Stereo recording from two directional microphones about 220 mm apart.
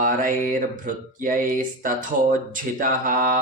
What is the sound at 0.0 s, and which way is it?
Mantra, 35° right (ahead or behind).